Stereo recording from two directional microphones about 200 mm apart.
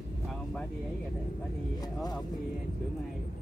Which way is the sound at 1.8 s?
20° left (ahead or behind).